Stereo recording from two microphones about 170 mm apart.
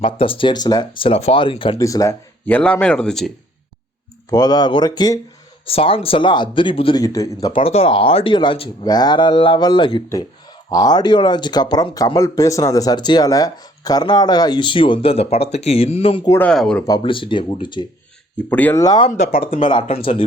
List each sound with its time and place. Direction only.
0.0 s speech: 30° left (ahead or behind)
1.8 s speech: 20° left (ahead or behind)
2.5 s speech: 10° left (ahead or behind)
4.3 s speech: 25° left (ahead or behind)
7.6 s speech: 35° left (ahead or behind)
16.4 s speech: 5° left (ahead or behind)
16.8 s speech: 25° left (ahead or behind)
18.4 s speech: 10° left (ahead or behind)
18.8 s speech: 25° left (ahead or behind)
19.3 s speech: 55° left (ahead or behind)
19.5 s speech: 30° left (ahead or behind)